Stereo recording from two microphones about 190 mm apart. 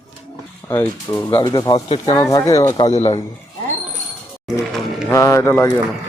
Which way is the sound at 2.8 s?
35° left (ahead or behind).